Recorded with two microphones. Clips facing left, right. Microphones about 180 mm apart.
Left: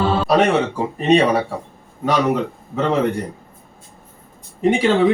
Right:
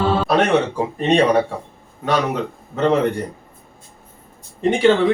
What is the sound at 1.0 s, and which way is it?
Speech, 5° left (ahead or behind).